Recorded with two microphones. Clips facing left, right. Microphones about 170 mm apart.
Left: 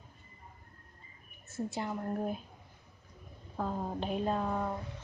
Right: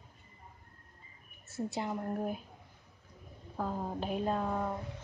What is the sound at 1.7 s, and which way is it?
Speech, 20° right (ahead or behind).